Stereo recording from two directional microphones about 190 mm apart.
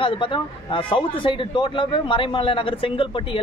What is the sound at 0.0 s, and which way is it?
Speech, 25° left (ahead or behind).